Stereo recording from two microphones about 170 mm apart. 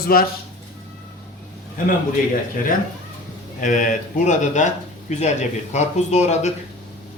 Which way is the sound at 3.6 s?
50° left (ahead or behind).